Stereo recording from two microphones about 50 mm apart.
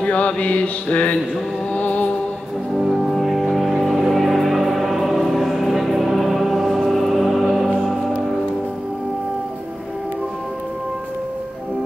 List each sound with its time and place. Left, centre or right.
0.0 s mantra: left
1.7 s music: left
2.8 s music: centre